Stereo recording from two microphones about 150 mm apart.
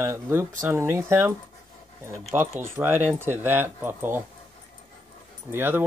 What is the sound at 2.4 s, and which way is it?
Speech, 15° right (ahead or behind).